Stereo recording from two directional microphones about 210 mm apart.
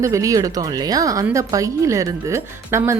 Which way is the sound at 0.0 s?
15° right (ahead or behind).